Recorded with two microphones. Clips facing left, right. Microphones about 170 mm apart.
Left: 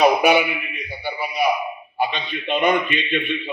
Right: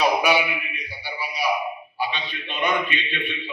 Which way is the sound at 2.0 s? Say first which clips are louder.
Left 6 dB; 50° left (ahead or behind).